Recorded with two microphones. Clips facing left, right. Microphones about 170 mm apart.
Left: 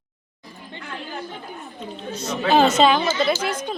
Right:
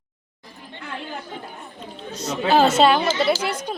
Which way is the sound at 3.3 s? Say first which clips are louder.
Right 1 dB; 70° right (ahead or behind).